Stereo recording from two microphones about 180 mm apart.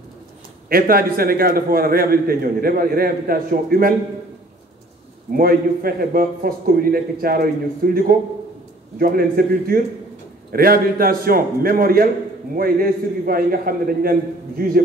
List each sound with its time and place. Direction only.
0.7 s a man's voice: 55° right (ahead or behind)
5.3 s a man's voice: 55° right (ahead or behind)